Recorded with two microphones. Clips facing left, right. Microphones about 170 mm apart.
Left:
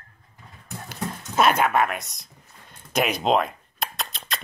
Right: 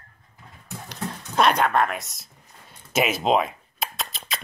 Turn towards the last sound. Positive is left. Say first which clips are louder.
# even
turn(degrees=0)  # may be behind; listen again after turning